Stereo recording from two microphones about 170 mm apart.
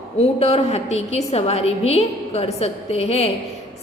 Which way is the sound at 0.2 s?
35° left (ahead or behind).